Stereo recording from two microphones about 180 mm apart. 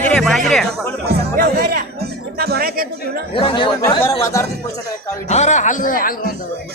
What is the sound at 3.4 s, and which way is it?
Speech, 25° left (ahead or behind).